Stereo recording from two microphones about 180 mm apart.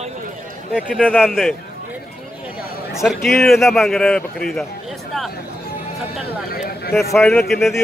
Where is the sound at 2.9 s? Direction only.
Centre (ahead or behind).